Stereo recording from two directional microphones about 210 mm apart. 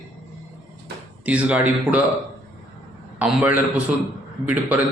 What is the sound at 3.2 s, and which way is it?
A man's voice, 5° right (ahead or behind).